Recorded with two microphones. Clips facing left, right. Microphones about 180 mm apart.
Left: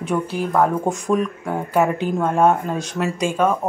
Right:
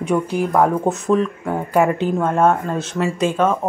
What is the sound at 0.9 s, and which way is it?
Speech, 15° left (ahead or behind).